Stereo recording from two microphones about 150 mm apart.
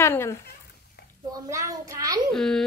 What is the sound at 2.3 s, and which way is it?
Speech, 5° left (ahead or behind).